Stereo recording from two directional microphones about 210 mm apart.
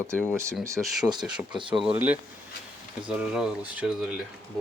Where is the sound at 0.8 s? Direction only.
5° right (ahead or behind).